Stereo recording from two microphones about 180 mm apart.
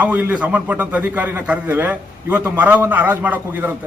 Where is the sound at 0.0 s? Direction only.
10° right (ahead or behind).